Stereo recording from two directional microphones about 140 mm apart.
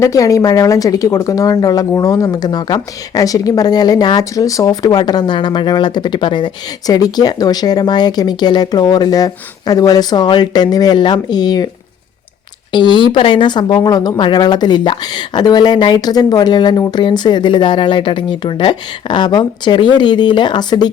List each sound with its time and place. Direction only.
0.0 s speech: 25° left (ahead or behind)
12.7 s speech: 35° left (ahead or behind)